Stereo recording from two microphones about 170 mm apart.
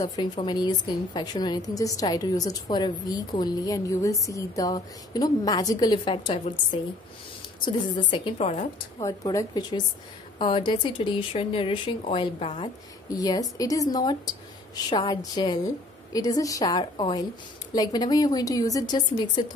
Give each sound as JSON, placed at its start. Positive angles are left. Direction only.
{"t": 0.0, "sound": "a woman's voice", "side_deg": 25}
{"t": 13.1, "sound": "a woman's voice", "side_deg": 20}